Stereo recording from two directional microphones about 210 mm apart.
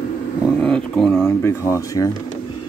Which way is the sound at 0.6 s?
5° left (ahead or behind).